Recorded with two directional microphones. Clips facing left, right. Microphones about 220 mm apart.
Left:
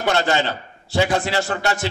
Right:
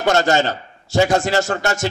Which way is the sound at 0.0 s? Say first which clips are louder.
Right 3 dB; 45° right (ahead or behind).